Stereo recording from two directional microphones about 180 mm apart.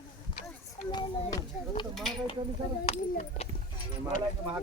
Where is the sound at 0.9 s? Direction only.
20° left (ahead or behind).